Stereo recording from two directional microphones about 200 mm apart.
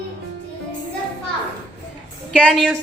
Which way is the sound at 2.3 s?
Centre (ahead or behind).